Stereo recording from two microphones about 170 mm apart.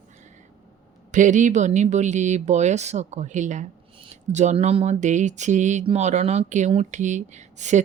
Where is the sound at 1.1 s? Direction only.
45° right (ahead or behind).